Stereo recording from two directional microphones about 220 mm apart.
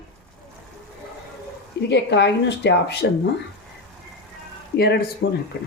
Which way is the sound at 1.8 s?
50° left (ahead or behind).